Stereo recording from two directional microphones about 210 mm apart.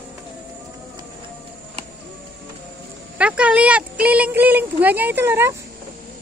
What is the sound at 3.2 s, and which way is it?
A woman's voice, 5° right (ahead or behind).